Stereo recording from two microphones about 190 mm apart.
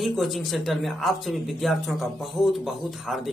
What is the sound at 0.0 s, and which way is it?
Speech, centre (ahead or behind).